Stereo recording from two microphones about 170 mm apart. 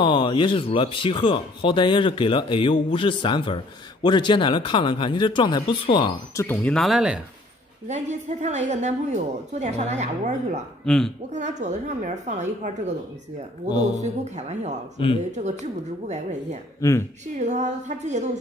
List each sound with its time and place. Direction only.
0.0 s speech: 30° left (ahead or behind)
6.4 s speech: 10° left (ahead or behind)
7.9 s a woman's voice: 45° right (ahead or behind)
10.9 s speech: 5° left (ahead or behind)
11.3 s a woman's voice: 45° right (ahead or behind)
14.0 s a woman's voice: 40° right (ahead or behind)
17.4 s a woman's voice: 45° right (ahead or behind)